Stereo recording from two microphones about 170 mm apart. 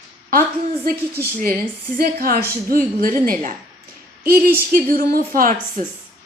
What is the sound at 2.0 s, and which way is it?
A woman's voice, 60° right (ahead or behind).